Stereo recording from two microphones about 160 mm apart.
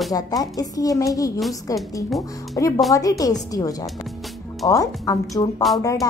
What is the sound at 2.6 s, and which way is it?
A woman's voice, 20° left (ahead or behind).